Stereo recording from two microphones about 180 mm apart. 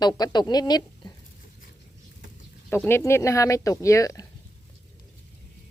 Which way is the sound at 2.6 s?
10° left (ahead or behind).